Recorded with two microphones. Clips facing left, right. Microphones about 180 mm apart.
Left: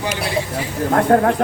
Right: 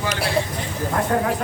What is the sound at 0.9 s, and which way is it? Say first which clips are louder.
Speech: left 7 dB; 55° left (ahead or behind).